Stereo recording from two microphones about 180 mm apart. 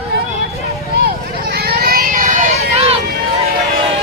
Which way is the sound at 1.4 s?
60° right (ahead or behind).